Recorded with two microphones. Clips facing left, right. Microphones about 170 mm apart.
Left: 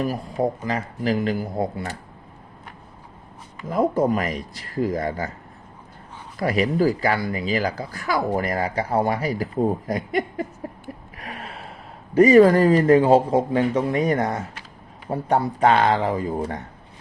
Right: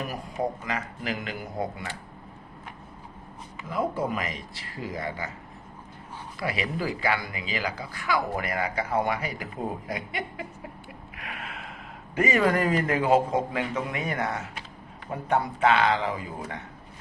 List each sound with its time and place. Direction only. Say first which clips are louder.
0.0 s speech: left 7 dB; 35° left (ahead or behind)
3.7 s speech: left 8 dB; 45° left (ahead or behind)
6.4 s speech: left 10 dB; 40° left (ahead or behind)
11.2 s gasp: left 1 dB; 35° left (ahead or behind)
12.1 s speech: left 11 dB; 35° left (ahead or behind)